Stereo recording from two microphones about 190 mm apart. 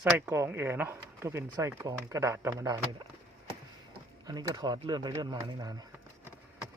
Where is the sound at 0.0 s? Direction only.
10° right (ahead or behind).